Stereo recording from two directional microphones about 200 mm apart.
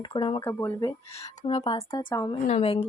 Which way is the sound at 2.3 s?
30° left (ahead or behind).